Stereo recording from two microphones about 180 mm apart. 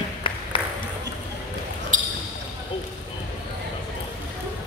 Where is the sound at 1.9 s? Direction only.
45° right (ahead or behind).